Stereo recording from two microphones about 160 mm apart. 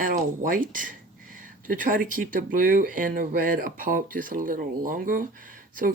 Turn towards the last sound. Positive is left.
turn(degrees=-60)  # may be behind; listen again after turning